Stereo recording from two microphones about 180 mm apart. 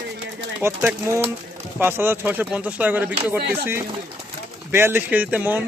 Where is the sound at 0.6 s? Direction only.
15° right (ahead or behind).